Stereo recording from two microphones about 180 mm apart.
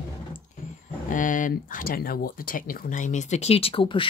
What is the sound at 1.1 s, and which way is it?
Speech, 45° left (ahead or behind).